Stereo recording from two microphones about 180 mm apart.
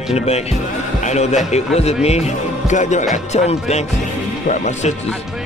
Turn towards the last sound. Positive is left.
turn(degrees=40)  # may be behind; listen again after turning